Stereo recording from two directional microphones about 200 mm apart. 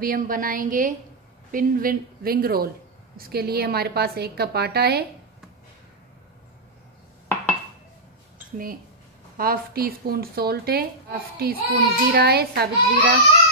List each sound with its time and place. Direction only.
0.0 s speech: 45° right (ahead or behind)
9.4 s speech: 45° right (ahead or behind)